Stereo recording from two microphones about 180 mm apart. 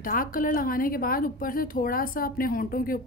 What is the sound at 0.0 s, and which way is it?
A woman's voice, 50° left (ahead or behind).